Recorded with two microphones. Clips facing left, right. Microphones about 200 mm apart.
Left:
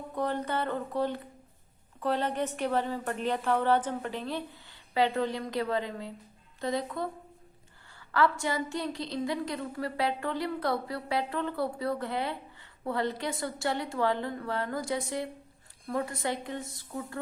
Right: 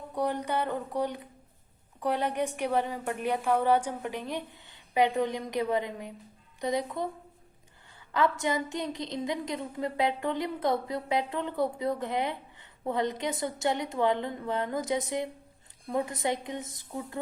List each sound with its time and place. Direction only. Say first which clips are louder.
0.1 s a woman's voice: right 1 dB; 15° right (ahead or behind)